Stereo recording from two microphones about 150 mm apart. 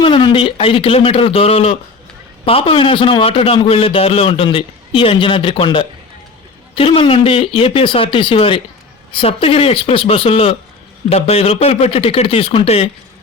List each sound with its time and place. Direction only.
0.0 s a man's voice: 35° left (ahead or behind)